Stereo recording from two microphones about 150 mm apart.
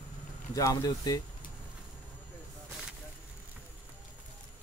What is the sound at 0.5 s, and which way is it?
Speech, 20° left (ahead or behind).